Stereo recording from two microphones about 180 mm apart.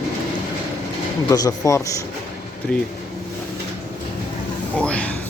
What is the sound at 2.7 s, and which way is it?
Speech, 5° left (ahead or behind).